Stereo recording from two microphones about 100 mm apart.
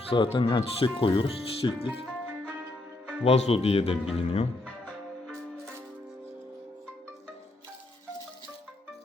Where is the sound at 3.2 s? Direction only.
80° left.